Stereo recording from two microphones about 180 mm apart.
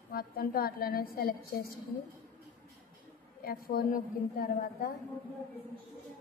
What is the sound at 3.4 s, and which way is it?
A woman's voice, 55° left (ahead or behind).